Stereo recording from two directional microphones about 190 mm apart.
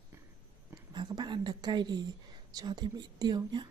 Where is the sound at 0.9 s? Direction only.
25° right (ahead or behind).